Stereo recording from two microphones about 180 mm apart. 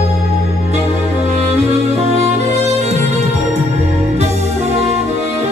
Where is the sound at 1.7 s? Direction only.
35° right (ahead or behind).